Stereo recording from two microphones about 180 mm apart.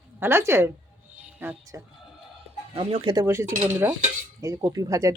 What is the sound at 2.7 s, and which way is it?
Speech, 25° right (ahead or behind).